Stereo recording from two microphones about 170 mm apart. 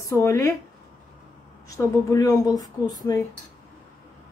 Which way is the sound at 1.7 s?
20° left (ahead or behind).